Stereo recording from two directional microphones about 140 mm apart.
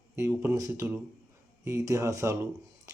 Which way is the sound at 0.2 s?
20° right (ahead or behind).